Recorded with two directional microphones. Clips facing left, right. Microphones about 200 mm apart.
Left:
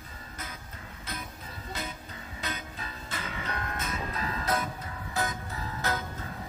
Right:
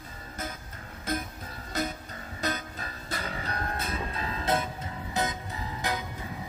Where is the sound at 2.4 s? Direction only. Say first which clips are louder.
Right 6 dB; 40° right (ahead or behind).